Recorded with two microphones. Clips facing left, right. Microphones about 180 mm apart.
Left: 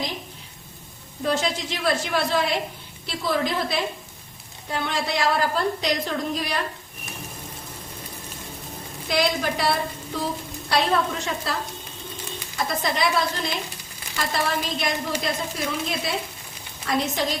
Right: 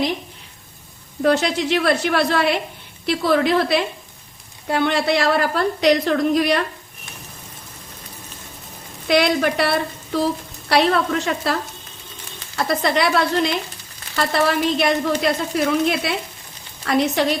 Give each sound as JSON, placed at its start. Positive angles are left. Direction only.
{"t": 1.2, "sound": "a woman's voice", "side_deg": -70}
{"t": 9.0, "sound": "a woman's voice", "side_deg": -70}
{"t": 12.5, "sound": "a woman's voice", "side_deg": -70}